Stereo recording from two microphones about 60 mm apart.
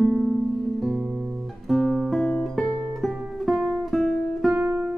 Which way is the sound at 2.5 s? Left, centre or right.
Centre.